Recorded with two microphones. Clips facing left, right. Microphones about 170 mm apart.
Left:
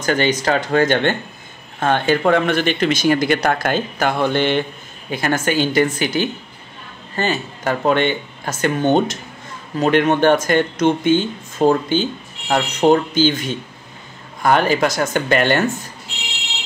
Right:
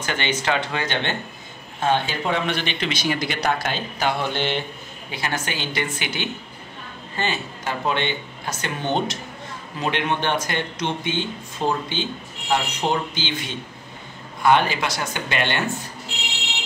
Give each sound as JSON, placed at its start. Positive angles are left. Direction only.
{"t": 0.0, "sound": "speech", "side_deg": 40}